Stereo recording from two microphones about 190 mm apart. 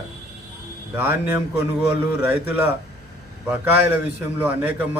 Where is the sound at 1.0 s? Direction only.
10° right (ahead or behind).